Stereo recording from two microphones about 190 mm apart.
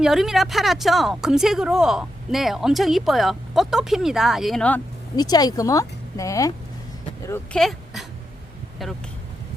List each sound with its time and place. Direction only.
0.0 s speech: centre (ahead or behind)
5.1 s speech: 20° left (ahead or behind)
7.6 s speech: centre (ahead or behind)